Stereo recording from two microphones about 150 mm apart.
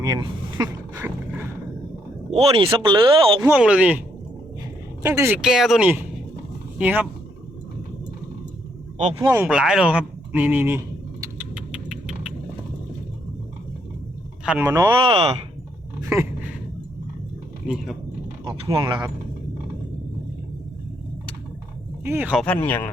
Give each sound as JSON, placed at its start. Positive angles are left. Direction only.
{"t": 0.0, "sound": "speech", "side_deg": -25}
{"t": 2.3, "sound": "speech", "side_deg": -40}
{"t": 3.4, "sound": "speech", "side_deg": -10}
{"t": 5.0, "sound": "speech", "side_deg": -15}
{"t": 5.4, "sound": "speech", "side_deg": -5}
{"t": 9.4, "sound": "speech", "side_deg": -5}
{"t": 11.3, "sound": "vehicle", "side_deg": -5}
{"t": 14.4, "sound": "speech", "side_deg": -10}
{"t": 14.7, "sound": "speech", "side_deg": -30}
{"t": 16.0, "sound": "dog", "side_deg": -20}
{"t": 18.4, "sound": "speech", "side_deg": -30}
{"t": 22.0, "sound": "speech", "side_deg": -15}
{"t": 22.4, "sound": "speech", "side_deg": 10}